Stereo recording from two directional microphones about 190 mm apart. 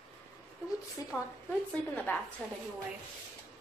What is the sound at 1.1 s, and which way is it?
A woman's voice, 5° left (ahead or behind).